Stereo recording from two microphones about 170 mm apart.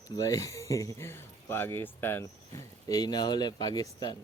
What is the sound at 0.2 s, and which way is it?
Speech, 20° left (ahead or behind).